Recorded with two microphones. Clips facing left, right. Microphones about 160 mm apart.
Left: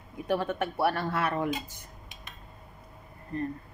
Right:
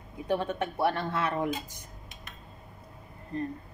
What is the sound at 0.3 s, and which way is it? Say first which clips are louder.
A woman's voice: left 1 dB; 20° right (ahead or behind).